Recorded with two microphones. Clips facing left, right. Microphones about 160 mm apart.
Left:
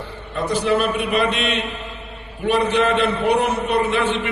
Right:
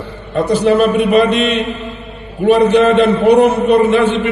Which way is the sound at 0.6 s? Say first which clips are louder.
Right 8 dB; 40° right (ahead or behind).